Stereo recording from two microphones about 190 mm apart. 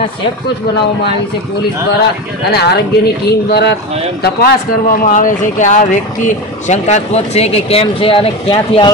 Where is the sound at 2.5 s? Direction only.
60° left (ahead or behind).